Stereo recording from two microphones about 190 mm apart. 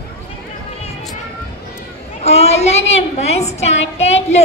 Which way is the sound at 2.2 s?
35° left (ahead or behind).